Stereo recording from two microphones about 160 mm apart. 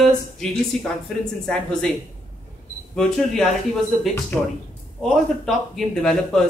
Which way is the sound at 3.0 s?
5° left (ahead or behind).